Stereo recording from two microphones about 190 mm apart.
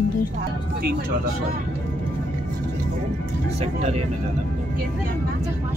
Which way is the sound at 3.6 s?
35° right (ahead or behind).